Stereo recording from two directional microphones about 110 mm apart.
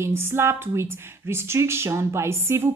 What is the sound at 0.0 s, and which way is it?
Speech, 20° right (ahead or behind).